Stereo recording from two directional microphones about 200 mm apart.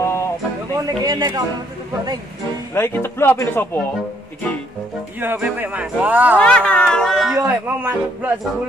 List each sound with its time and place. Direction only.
0.0 s music: 15° left (ahead or behind)
0.8 s speech: 20° right (ahead or behind)
2.7 s speech: 10° left (ahead or behind)
5.2 s speech: 10° right (ahead or behind)
6.3 s speech: 5° left (ahead or behind)